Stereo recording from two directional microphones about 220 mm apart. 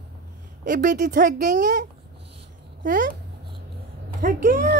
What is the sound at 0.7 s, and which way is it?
A woman's voice, 40° right (ahead or behind).